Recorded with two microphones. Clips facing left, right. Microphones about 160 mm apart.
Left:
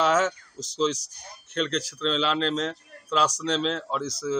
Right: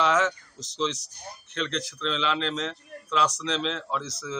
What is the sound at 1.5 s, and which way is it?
Speech, 40° left (ahead or behind).